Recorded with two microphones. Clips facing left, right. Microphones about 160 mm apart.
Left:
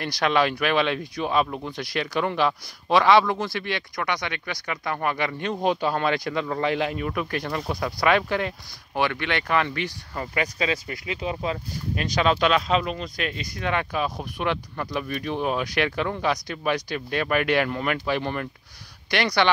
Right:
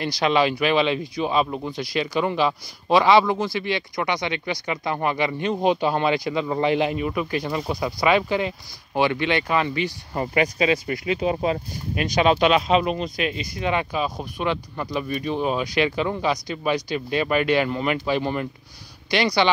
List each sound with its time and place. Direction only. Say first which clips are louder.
0.0 s speech: right 2 dB; centre (ahead or behind)
4.0 s speech: right 3 dB; 20° right (ahead or behind)
5.0 s speech: right 3 dB; centre (ahead or behind)
8.9 s speech: right 4 dB; 15° right (ahead or behind)
10.1 s speech: right 6 dB; 20° right (ahead or behind)
11.7 s speech: right 3 dB; 15° right (ahead or behind)